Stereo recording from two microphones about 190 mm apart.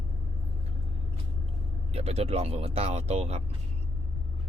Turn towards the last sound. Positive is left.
turn(degrees=-35)  # may be behind; listen again after turning